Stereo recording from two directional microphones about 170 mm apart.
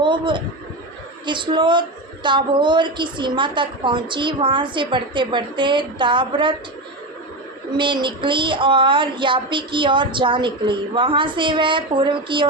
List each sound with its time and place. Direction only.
0.0 s a sound: 30° right (ahead or behind)
1.2 s a woman's voice: 30° right (ahead or behind)
7.8 s a woman's voice: 30° right (ahead or behind)